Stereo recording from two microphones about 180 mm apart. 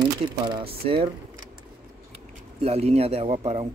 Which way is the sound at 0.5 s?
25° right (ahead or behind).